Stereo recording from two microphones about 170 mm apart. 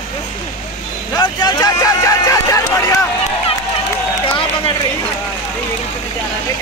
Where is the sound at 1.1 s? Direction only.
25° left (ahead or behind).